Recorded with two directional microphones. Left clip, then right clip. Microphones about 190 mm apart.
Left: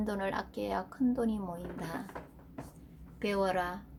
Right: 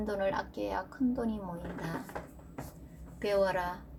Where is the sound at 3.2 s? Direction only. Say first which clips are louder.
Right 2 dB; 40° left (ahead or behind).